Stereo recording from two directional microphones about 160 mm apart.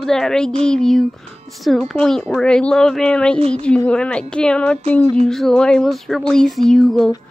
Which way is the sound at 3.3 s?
40° right (ahead or behind).